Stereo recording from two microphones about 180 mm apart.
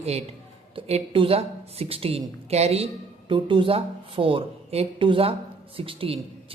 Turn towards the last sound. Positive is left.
turn(degrees=-30)  # may be behind; listen again after turning